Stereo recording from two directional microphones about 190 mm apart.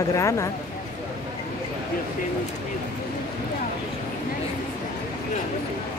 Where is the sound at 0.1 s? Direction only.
15° left (ahead or behind).